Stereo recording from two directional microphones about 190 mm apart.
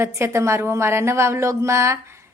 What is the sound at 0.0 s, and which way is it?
A woman's voice, 15° right (ahead or behind).